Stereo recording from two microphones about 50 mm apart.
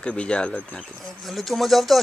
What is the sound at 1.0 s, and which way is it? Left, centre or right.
Speech, centre.